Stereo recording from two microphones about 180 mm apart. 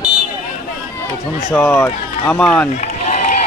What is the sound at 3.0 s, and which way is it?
Run, 40° left (ahead or behind).